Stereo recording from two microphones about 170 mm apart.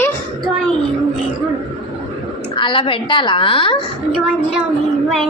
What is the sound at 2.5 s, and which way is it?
A woman's voice, 30° left (ahead or behind).